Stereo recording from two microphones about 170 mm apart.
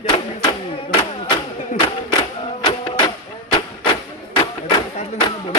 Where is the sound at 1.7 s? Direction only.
45° left (ahead or behind).